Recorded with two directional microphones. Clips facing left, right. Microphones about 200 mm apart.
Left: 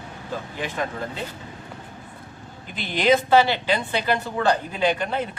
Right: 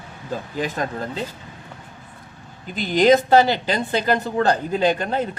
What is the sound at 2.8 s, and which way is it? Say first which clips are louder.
A man's voice: right 5 dB; 40° right (ahead or behind).